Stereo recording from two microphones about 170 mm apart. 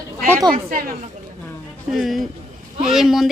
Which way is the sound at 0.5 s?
55° right (ahead or behind).